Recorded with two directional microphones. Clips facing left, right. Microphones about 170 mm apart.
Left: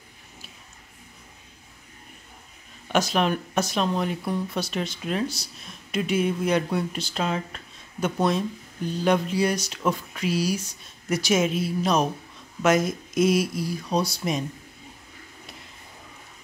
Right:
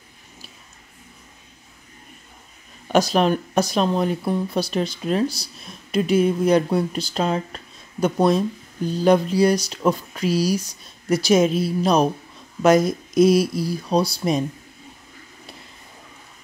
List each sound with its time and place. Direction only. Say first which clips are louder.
2.9 s speech: right 5 dB; 35° right (ahead or behind)